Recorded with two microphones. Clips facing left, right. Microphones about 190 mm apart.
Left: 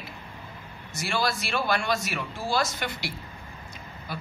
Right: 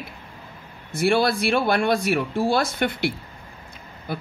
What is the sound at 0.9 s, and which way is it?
A woman's voice, 55° right (ahead or behind).